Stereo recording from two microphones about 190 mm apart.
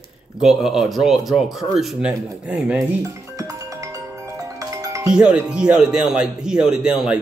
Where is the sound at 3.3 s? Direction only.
20° right (ahead or behind).